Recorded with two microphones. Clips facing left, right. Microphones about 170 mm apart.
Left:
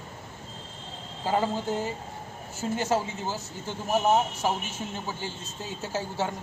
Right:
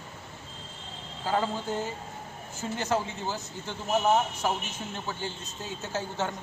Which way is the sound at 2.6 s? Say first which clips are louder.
Left 4 dB; 35° left (ahead or behind).